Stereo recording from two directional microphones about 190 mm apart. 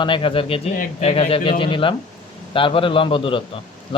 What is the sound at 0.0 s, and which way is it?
Speech, 25° left (ahead or behind).